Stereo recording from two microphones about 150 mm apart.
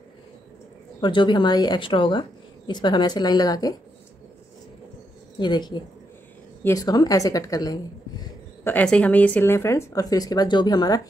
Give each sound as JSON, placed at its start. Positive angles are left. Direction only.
{"t": 1.0, "sound": "a woman's voice", "side_deg": 30}
{"t": 5.4, "sound": "a woman's voice", "side_deg": 30}
{"t": 8.6, "sound": "a woman's voice", "side_deg": 10}